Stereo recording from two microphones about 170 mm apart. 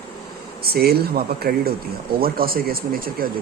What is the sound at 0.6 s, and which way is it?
Speech, 65° right (ahead or behind).